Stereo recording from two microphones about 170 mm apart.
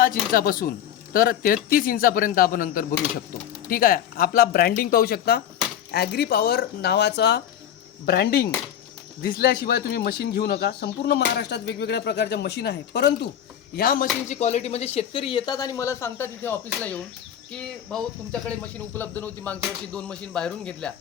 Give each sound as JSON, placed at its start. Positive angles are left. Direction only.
{"t": 0.0, "sound": "speech", "side_deg": 55}
{"t": 8.0, "sound": "speech", "side_deg": 70}
{"t": 13.7, "sound": "speech", "side_deg": 55}
{"t": 14.3, "sound": "speech", "side_deg": 40}